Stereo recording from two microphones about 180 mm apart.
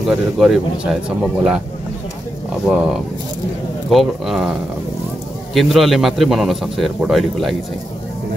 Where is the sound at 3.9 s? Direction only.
Centre (ahead or behind).